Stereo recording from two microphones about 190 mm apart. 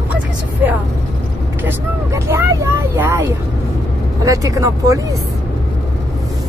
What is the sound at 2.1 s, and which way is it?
A woman's voice, 15° right (ahead or behind).